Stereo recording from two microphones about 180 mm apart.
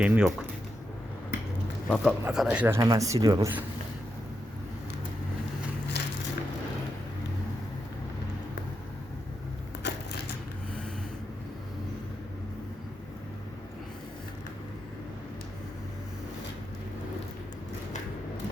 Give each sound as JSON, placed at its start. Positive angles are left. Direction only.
{"t": 0.0, "sound": "speech", "side_deg": -10}
{"t": 1.9, "sound": "speech", "side_deg": -5}
{"t": 6.0, "sound": "a sound", "side_deg": 65}
{"t": 9.8, "sound": "crushing", "side_deg": 70}